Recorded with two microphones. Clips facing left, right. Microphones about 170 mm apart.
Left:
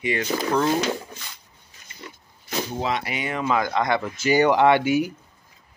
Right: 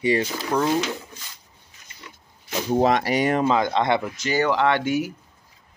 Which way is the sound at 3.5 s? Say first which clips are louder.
Right 2 dB; 25° right (ahead or behind).